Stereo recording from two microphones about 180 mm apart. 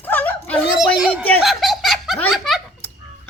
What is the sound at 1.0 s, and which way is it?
Speech, 5° right (ahead or behind).